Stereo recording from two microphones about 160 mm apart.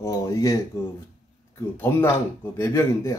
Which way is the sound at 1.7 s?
15° left (ahead or behind).